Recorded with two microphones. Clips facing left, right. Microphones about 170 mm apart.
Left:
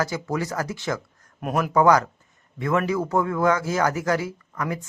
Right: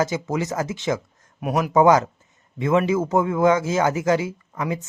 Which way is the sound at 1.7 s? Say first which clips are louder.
Right 2 dB; 20° right (ahead or behind).